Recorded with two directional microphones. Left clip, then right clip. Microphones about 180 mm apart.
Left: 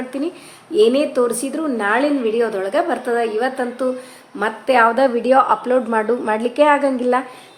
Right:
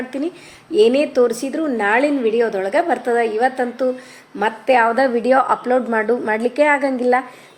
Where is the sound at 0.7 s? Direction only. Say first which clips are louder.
Even; 15° right (ahead or behind).